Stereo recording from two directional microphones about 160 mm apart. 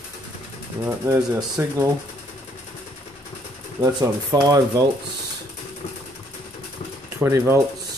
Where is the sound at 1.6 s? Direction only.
15° right (ahead or behind).